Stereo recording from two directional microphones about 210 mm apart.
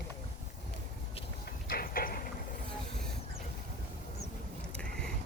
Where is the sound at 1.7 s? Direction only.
45° left (ahead or behind).